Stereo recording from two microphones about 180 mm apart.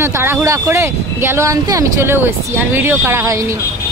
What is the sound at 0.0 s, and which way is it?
Speech, 15° right (ahead or behind).